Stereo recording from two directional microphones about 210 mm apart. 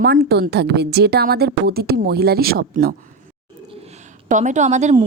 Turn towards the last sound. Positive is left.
turn(degrees=-35)  # may be behind; listen again after turning